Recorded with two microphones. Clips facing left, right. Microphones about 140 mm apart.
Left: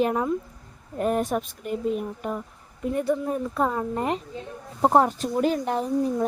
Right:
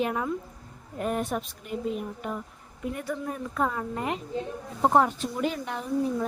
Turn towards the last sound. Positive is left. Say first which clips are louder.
# left 4 dB
turn(degrees=35)  # may be behind; listen again after turning